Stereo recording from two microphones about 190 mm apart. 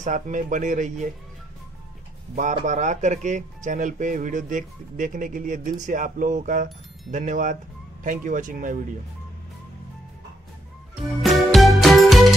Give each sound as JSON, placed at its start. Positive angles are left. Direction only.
{"t": 0.0, "sound": "speech", "side_deg": -40}
{"t": 2.5, "sound": "speech", "side_deg": -40}
{"t": 11.0, "sound": "music", "side_deg": 0}